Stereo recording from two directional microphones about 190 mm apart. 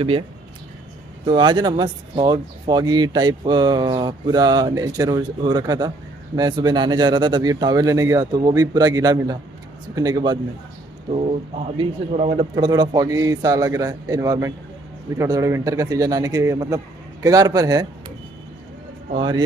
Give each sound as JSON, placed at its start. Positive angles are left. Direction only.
{"t": 1.2, "sound": "speech", "side_deg": -25}
{"t": 11.7, "sound": "speech", "side_deg": -30}
{"t": 19.1, "sound": "speech", "side_deg": -20}